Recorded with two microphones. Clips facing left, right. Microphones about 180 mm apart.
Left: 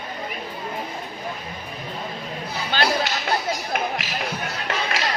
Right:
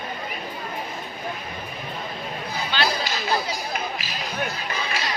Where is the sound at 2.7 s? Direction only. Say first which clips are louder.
Left 2 dB; 45° left (ahead or behind).